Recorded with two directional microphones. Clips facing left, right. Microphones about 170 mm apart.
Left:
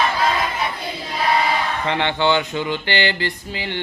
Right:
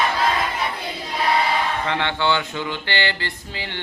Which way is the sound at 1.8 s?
20° left (ahead or behind).